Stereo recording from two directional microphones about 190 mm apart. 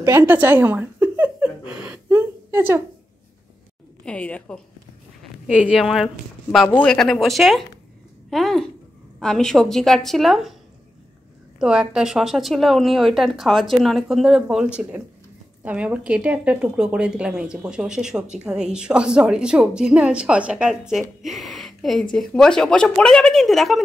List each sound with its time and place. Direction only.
0.0 s a sound: 15° right (ahead or behind)
4.0 s speech: 5° left (ahead or behind)
5.5 s speech: 5° right (ahead or behind)
11.6 s speech: 5° right (ahead or behind)